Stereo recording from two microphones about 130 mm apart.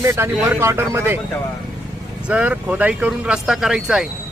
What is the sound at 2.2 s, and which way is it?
Speech, 10° right (ahead or behind).